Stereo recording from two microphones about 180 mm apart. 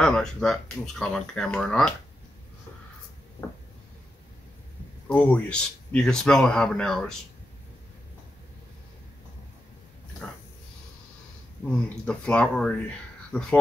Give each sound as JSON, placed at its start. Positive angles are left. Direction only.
{"t": 0.0, "sound": "speech", "side_deg": 5}
{"t": 5.0, "sound": "speech", "side_deg": 10}
{"t": 10.2, "sound": "speech", "side_deg": 5}
{"t": 11.7, "sound": "speech", "side_deg": 5}